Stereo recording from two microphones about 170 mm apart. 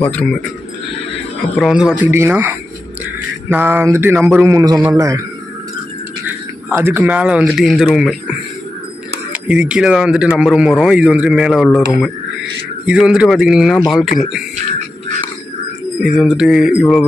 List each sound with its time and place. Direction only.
0.0 s a man's voice: 5° left (ahead or behind)
1.6 s speech: 5° right (ahead or behind)
2.0 s a sound: 15° right (ahead or behind)
6.8 s a sound: 10° right (ahead or behind)
7.5 s speech: centre (ahead or behind)
16.0 s speech: centre (ahead or behind)